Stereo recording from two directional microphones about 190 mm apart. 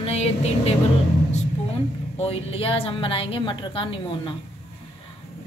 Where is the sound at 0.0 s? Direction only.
35° left (ahead or behind).